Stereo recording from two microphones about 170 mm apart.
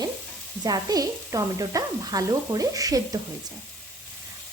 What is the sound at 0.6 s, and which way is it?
Speech, 20° right (ahead or behind).